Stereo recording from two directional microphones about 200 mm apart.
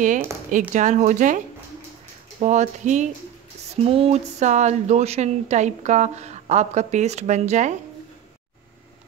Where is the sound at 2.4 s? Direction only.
35° right (ahead or behind).